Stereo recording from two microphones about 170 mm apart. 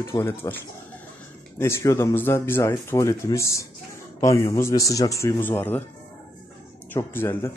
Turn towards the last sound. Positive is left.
turn(degrees=15)  # may be behind; listen again after turning